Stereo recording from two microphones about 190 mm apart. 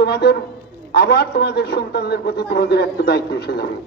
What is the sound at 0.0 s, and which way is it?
A man's voice, 60° left (ahead or behind).